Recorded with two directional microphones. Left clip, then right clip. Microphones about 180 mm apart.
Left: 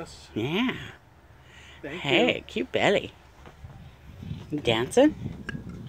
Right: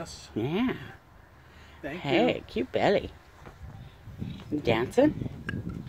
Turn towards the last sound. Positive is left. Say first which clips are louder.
# left 3 dB
turn(degrees=0)  # may be behind; listen again after turning